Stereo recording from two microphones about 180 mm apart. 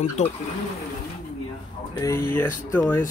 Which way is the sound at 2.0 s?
15° left (ahead or behind).